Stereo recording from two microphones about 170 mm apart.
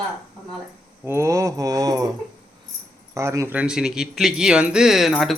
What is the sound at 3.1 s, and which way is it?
A man's voice, 15° right (ahead or behind).